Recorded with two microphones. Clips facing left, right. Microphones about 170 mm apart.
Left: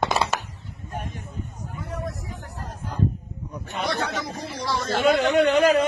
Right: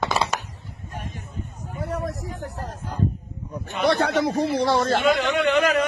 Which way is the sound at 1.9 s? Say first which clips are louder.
Right 3 dB; 75° right (ahead or behind).